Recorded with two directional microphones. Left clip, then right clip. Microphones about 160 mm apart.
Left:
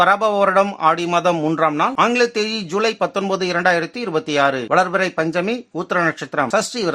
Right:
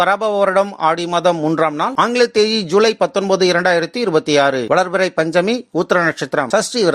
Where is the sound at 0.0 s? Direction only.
25° right (ahead or behind).